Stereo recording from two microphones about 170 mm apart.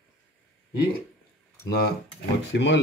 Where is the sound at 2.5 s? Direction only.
90° left.